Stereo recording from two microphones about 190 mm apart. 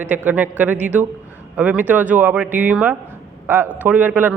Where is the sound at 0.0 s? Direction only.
10° right (ahead or behind).